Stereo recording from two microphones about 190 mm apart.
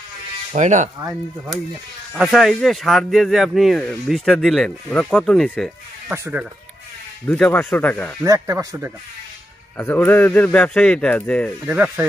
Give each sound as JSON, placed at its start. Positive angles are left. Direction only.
{"t": 0.5, "sound": "speech", "side_deg": -40}
{"t": 2.1, "sound": "speech", "side_deg": 0}
{"t": 6.1, "sound": "speech", "side_deg": -15}
{"t": 7.2, "sound": "a man's voice", "side_deg": 5}
{"t": 8.2, "sound": "speech", "side_deg": -15}
{"t": 9.8, "sound": "a man's voice", "side_deg": 10}
{"t": 11.6, "sound": "speech", "side_deg": -10}